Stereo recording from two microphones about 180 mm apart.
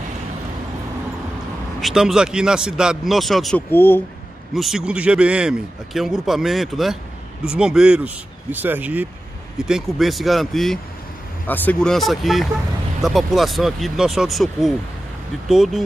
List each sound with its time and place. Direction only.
1.8 s a man's voice: centre (ahead or behind)
4.6 s a man's voice: centre (ahead or behind)